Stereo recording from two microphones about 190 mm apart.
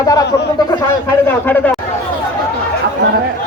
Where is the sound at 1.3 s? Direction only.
10° left (ahead or behind).